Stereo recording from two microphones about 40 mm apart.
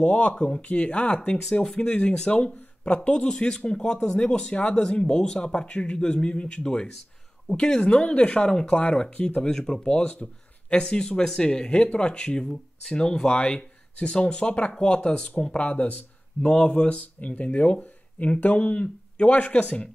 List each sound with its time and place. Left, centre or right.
0.0 s speech: left
1.5 s speech: centre
1.8 s speech: left
9.4 s speech: centre
9.8 s speech: left
17.0 s speech: left